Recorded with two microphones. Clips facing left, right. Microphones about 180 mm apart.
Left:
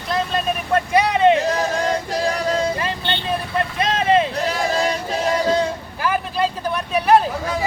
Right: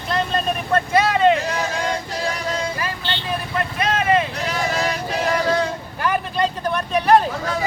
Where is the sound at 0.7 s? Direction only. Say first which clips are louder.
Even; 15° left (ahead or behind).